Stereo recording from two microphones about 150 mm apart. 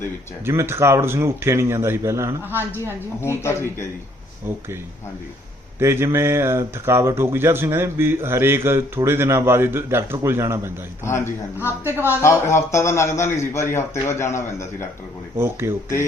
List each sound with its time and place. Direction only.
0.4 s speech: 15° right (ahead or behind)
3.2 s speech: 15° left (ahead or behind)
5.8 s speech: 15° right (ahead or behind)
11.0 s speech: 15° left (ahead or behind)
11.9 s speech: 15° right (ahead or behind)
12.2 s a man's voice: 20° left (ahead or behind)
15.4 s speech: 15° right (ahead or behind)